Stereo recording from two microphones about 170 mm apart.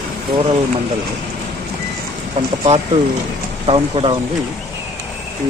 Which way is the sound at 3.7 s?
30° right (ahead or behind).